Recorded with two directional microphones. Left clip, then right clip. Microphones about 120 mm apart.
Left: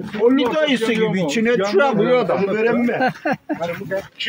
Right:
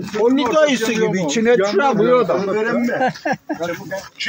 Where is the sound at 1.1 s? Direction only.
10° left (ahead or behind).